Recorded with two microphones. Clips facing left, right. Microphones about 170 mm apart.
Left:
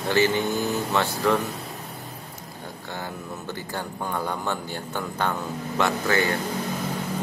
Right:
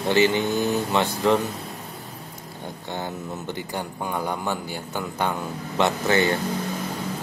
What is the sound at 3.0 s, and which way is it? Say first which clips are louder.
A man's voice: right 3 dB; 20° right (ahead or behind).